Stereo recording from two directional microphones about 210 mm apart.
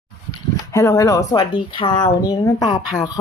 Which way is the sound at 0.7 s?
15° left (ahead or behind).